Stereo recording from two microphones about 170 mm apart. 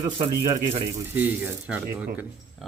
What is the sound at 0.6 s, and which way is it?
Speech, 40° right (ahead or behind).